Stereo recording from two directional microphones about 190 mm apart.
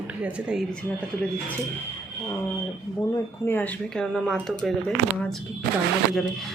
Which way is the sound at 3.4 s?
10° left (ahead or behind).